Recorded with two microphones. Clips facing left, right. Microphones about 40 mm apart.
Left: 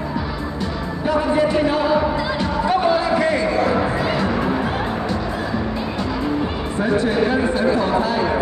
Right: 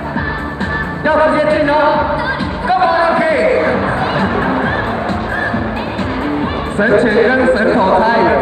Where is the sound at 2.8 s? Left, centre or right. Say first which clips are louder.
Right 5 dB; right.